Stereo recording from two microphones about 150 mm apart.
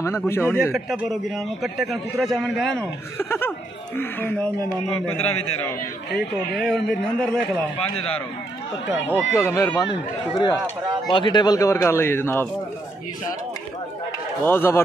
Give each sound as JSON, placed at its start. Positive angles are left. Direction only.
{"t": 0.0, "sound": "a man's voice", "side_deg": 15}
{"t": 0.7, "sound": "a man's voice", "side_deg": 0}
{"t": 5.1, "sound": "a man's voice", "side_deg": 45}
{"t": 6.5, "sound": "a man's voice", "side_deg": 5}
{"t": 9.0, "sound": "a man's voice", "side_deg": 15}
{"t": 14.4, "sound": "a man's voice", "side_deg": 15}